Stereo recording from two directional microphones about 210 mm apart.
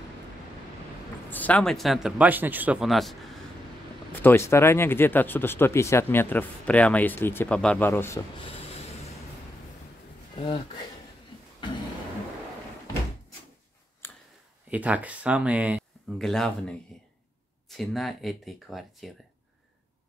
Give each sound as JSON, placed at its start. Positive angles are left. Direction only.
{"t": 1.3, "sound": "speech", "side_deg": 5}
{"t": 10.3, "sound": "speech", "side_deg": 25}
{"t": 14.0, "sound": "a sound", "side_deg": 10}
{"t": 14.7, "sound": "speech", "side_deg": -5}